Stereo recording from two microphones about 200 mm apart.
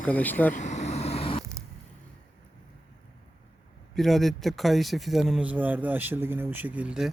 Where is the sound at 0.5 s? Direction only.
35° left (ahead or behind).